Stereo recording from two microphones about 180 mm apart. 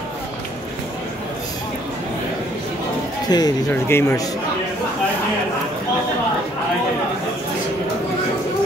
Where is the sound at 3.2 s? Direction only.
20° left (ahead or behind).